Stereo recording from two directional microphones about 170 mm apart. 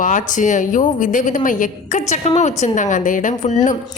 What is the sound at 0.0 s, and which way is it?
A woman's voice, 50° left (ahead or behind).